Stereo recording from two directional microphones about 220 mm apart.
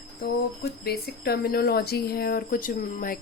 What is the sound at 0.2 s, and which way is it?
Speech, 45° left (ahead or behind).